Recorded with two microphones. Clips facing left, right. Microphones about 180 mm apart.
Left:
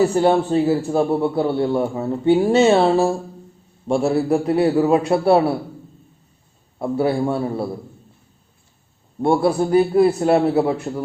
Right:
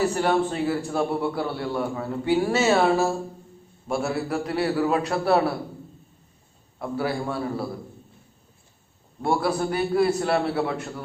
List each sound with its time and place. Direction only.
0.0 s a man's voice: 30° left (ahead or behind)
6.7 s a man's voice: 25° left (ahead or behind)
9.2 s a man's voice: 25° left (ahead or behind)